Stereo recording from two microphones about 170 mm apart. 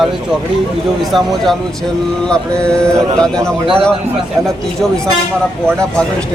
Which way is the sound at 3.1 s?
5° left (ahead or behind).